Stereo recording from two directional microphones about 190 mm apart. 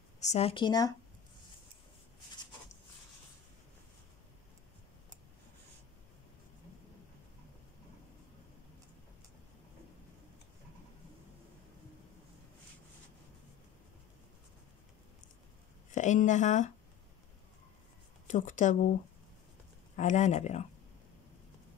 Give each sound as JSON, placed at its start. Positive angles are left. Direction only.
{"t": 0.2, "sound": "speech", "side_deg": 35}
{"t": 15.9, "sound": "speech", "side_deg": 40}
{"t": 18.2, "sound": "speech", "side_deg": 40}
{"t": 20.0, "sound": "speech", "side_deg": 40}